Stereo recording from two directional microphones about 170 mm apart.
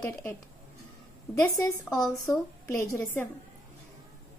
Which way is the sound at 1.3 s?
20° left (ahead or behind).